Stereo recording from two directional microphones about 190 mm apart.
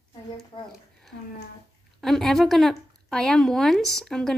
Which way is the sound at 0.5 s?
25° left (ahead or behind).